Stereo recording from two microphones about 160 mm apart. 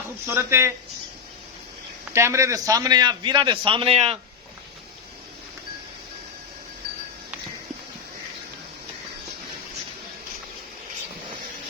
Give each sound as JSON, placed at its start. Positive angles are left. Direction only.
{"t": 0.3, "sound": "speech", "side_deg": -15}
{"t": 2.1, "sound": "a man's voice", "side_deg": -15}